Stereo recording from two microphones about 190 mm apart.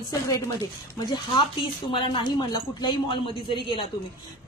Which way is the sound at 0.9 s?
25° left (ahead or behind).